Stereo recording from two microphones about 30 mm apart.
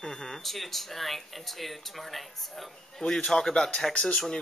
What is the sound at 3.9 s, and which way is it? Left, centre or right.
Speech, left.